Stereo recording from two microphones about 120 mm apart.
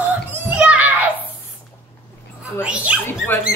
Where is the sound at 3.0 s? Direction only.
15° left (ahead or behind).